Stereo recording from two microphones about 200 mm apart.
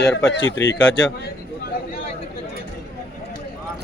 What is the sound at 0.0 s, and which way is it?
Speech, 15° left (ahead or behind).